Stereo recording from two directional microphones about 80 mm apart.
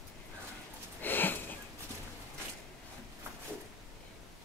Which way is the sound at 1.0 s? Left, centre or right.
Left.